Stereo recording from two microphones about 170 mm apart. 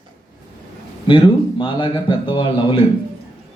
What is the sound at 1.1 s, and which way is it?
Speech, 30° left (ahead or behind).